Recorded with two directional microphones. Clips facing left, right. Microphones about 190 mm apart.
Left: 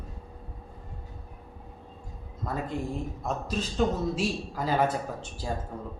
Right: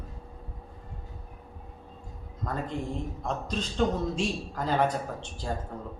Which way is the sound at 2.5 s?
5° left (ahead or behind).